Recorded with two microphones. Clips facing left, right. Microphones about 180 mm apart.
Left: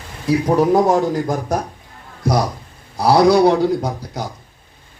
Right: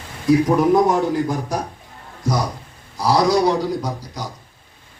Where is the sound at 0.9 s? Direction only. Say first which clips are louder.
Left 2 dB; 45° left (ahead or behind).